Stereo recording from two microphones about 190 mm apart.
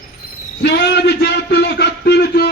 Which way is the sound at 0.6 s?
60° left (ahead or behind).